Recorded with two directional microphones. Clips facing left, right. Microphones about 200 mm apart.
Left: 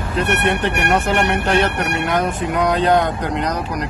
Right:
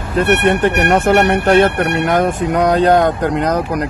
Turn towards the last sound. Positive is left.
turn(degrees=-50)  # may be behind; listen again after turning